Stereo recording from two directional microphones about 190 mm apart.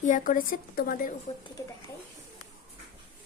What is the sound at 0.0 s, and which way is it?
A woman's voice, 45° left (ahead or behind).